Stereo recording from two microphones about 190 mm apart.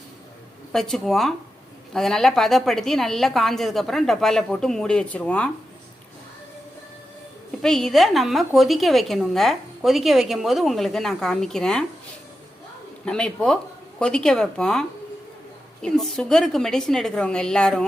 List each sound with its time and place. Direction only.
0.7 s a woman's voice: centre (ahead or behind)
7.6 s a woman's voice: 5° left (ahead or behind)
13.1 s a woman's voice: 5° left (ahead or behind)